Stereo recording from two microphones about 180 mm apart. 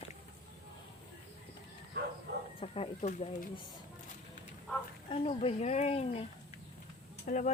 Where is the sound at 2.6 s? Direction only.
35° left (ahead or behind).